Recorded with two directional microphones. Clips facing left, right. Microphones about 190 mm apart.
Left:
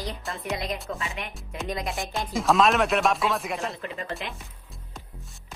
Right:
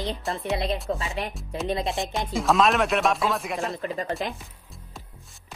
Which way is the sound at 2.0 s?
20° right (ahead or behind).